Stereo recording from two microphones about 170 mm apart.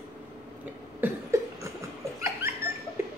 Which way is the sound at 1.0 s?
15° right (ahead or behind).